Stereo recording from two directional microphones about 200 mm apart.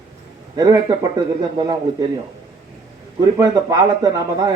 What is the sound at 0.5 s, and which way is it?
Speech, 20° right (ahead or behind).